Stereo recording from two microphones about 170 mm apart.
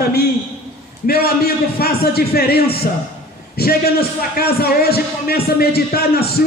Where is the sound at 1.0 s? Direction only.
65° left (ahead or behind).